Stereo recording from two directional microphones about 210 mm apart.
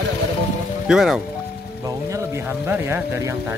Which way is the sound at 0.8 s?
Centre (ahead or behind).